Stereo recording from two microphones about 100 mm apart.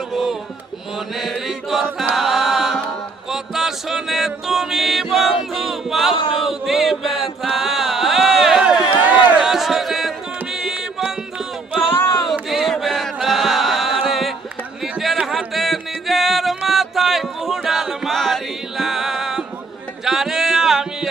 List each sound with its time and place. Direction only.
0.1 s a sound: centre (ahead or behind)
0.9 s chant: centre (ahead or behind)
3.2 s music: 5° right (ahead or behind)
5.1 s choir: 5° right (ahead or behind)
6.4 s chant: centre (ahead or behind)
9.5 s music: 5° right (ahead or behind)
11.9 s choir: 25° left (ahead or behind)
12.3 s chant: centre (ahead or behind)
14.9 s a sound: centre (ahead or behind)
15.2 s music: 5° right (ahead or behind)